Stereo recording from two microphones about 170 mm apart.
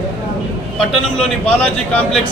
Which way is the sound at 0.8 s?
5° left (ahead or behind).